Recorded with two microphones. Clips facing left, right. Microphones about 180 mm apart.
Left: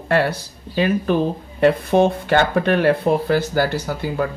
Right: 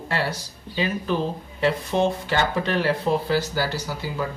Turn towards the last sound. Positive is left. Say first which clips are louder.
# left 6 dB
turn(degrees=55)  # may be behind; listen again after turning